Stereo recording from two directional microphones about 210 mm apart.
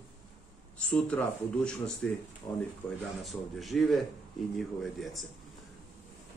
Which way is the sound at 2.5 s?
20° left (ahead or behind).